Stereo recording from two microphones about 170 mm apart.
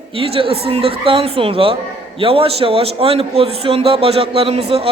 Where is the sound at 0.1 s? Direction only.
30° right (ahead or behind).